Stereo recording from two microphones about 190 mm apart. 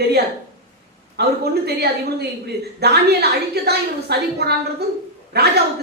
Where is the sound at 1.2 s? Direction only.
60° right (ahead or behind).